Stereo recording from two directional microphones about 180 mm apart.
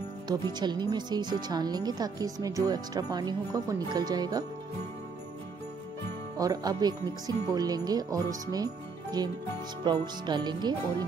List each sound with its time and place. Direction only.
0.3 s speech: 25° right (ahead or behind)
6.3 s speech: 20° right (ahead or behind)
9.8 s speech: 25° right (ahead or behind)